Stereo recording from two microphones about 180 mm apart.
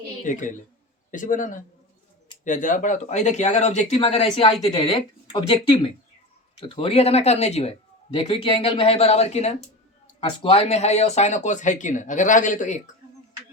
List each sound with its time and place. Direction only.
0.3 s a man's voice: 45° left (ahead or behind)